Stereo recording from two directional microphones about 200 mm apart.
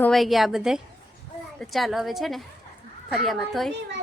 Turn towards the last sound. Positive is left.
turn(degrees=0)  # may be behind; listen again after turning